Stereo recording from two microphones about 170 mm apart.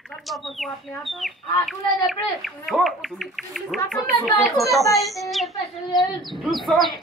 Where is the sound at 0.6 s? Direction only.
Centre (ahead or behind).